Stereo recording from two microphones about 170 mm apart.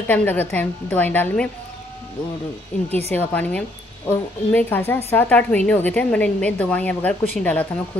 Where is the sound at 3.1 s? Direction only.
10° left (ahead or behind).